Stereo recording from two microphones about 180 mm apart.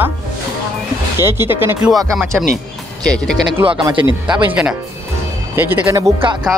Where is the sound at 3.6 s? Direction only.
25° right (ahead or behind).